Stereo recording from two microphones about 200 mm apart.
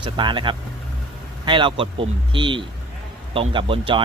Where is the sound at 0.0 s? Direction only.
25° right (ahead or behind).